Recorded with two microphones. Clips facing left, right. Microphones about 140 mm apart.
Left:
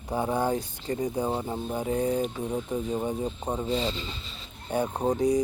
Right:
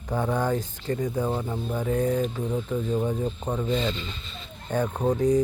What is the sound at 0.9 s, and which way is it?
Speech, 35° left (ahead or behind).